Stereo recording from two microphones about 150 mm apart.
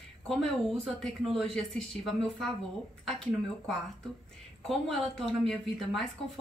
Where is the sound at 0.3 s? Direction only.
5° left (ahead or behind).